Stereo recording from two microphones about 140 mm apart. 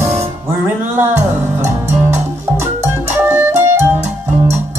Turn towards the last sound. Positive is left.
turn(degrees=-15)  # may be behind; listen again after turning